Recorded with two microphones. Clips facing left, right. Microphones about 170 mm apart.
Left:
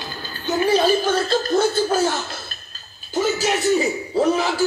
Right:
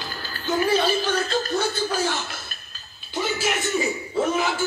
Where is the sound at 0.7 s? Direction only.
40° left (ahead or behind).